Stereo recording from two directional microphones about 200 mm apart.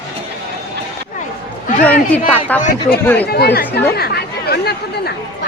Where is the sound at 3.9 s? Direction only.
50° left (ahead or behind).